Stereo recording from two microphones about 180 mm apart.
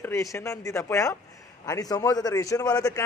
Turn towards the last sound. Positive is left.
turn(degrees=20)  # may be behind; listen again after turning